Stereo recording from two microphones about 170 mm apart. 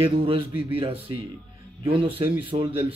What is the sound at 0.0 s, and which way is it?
Speech, 30° right (ahead or behind).